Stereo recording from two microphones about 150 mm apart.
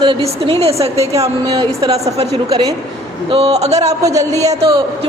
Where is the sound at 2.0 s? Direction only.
45° right (ahead or behind).